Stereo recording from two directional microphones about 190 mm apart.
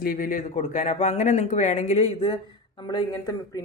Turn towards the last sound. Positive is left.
turn(degrees=20)  # may be behind; listen again after turning